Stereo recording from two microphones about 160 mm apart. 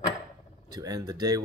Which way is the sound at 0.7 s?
25° right (ahead or behind).